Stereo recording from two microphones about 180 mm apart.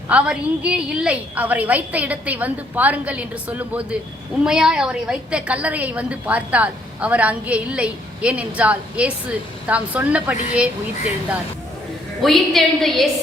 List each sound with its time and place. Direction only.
0.1 s a woman's voice: 5° right (ahead or behind)
12.2 s a woman's voice: centre (ahead or behind)